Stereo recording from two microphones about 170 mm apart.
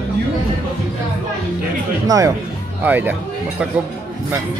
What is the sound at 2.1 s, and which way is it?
Speech, 20° right (ahead or behind).